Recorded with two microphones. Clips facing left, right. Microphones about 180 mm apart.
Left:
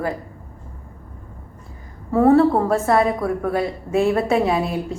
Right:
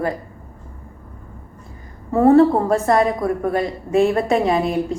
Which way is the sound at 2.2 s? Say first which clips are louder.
Right 2 dB; centre (ahead or behind).